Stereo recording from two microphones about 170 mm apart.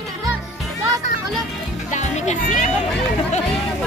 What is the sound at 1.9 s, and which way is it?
Music, 45° left (ahead or behind).